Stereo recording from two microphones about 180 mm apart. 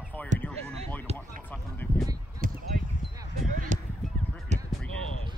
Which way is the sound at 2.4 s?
50° right (ahead or behind).